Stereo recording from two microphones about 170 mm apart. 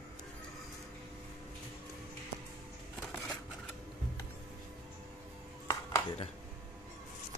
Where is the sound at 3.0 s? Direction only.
5° left (ahead or behind).